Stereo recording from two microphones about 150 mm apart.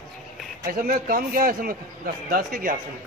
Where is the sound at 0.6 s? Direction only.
70° right (ahead or behind).